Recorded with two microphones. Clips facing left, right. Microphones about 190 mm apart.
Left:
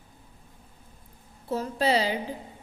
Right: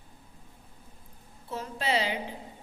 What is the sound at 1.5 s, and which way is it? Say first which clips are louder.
Speech: left 6 dB; 40° left (ahead or behind).